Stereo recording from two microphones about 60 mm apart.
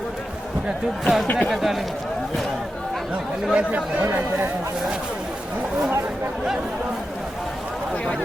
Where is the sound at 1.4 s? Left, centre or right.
Centre.